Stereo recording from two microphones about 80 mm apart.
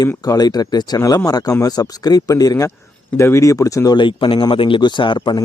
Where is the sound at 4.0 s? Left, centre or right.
Left.